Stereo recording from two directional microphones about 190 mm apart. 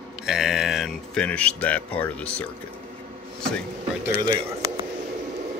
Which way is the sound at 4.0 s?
15° right (ahead or behind).